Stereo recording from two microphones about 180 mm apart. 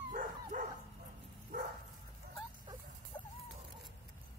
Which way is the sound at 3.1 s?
25° left (ahead or behind).